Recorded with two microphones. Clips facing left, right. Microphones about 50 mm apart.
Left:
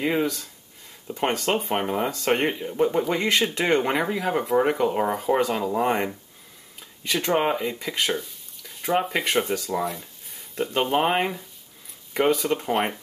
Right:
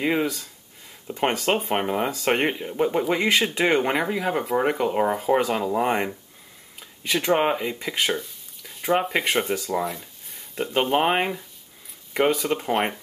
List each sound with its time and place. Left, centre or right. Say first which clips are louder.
0.0 s speech: even; centre